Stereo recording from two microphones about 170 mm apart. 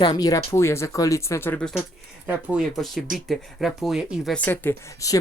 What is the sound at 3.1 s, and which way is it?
Speech, centre (ahead or behind).